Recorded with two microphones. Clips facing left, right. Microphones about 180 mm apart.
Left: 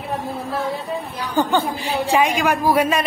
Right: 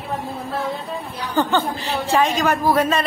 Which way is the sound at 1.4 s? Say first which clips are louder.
Left 1 dB; 10° left (ahead or behind).